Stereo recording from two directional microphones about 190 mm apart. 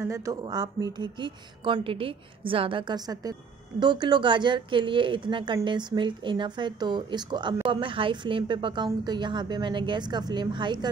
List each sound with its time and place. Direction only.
0.0 s a woman's voice: 15° right (ahead or behind)